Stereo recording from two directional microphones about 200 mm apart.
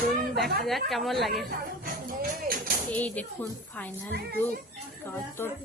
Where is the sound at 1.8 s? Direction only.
45° right (ahead or behind).